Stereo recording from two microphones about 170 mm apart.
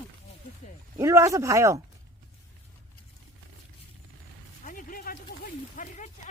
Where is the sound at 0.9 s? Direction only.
15° right (ahead or behind).